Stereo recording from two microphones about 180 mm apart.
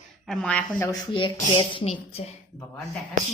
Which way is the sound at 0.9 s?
25° left (ahead or behind).